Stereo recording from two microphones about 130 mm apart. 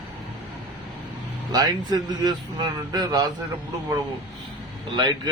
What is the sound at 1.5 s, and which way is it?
Speech, 30° right (ahead or behind).